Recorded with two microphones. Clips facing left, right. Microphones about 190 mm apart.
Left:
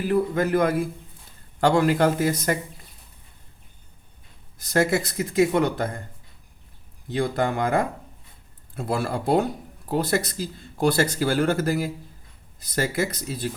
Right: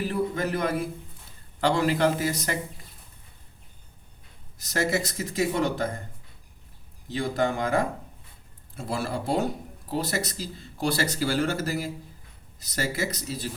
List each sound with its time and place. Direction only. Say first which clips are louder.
0.1 s a sound: left 6 dB; 55° left (ahead or behind)
1.6 s speech: left 4 dB; 50° left (ahead or behind)
4.5 s speech: left 5 dB; 55° left (ahead or behind)
7.1 s speech: left 2 dB; 55° left (ahead or behind)